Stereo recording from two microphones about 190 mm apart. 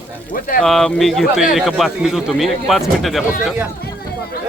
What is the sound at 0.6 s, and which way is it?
Speech, 5° left (ahead or behind).